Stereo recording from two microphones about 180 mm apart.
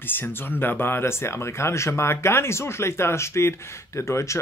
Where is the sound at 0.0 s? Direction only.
10° left (ahead or behind).